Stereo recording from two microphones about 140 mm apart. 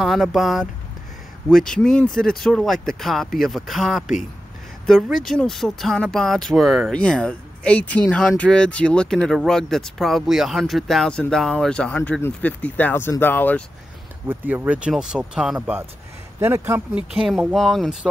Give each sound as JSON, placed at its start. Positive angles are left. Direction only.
{"t": 0.0, "sound": "speech", "side_deg": 0}
{"t": 5.0, "sound": "speech", "side_deg": 0}
{"t": 14.2, "sound": "speech", "side_deg": -15}
{"t": 16.3, "sound": "speech", "side_deg": -15}
{"t": 17.1, "sound": "speech", "side_deg": 0}